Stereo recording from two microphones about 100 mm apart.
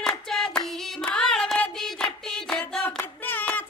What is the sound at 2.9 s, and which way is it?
Hands, 20° left (ahead or behind).